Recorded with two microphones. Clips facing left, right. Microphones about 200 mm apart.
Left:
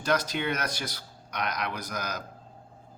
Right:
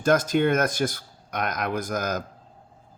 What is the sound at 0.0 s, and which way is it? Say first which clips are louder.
Speech: right 8 dB; 50° right (ahead or behind).